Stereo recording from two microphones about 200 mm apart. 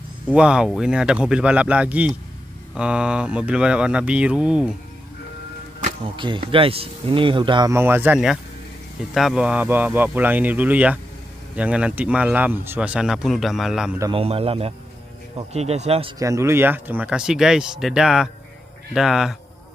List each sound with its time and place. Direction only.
0.3 s speech: 5° right (ahead or behind)
6.1 s speech: 25° right (ahead or behind); by 13.9 s centre (ahead or behind)
14.1 s speech: 30° right (ahead or behind)
16.2 s speech: 15° right (ahead or behind)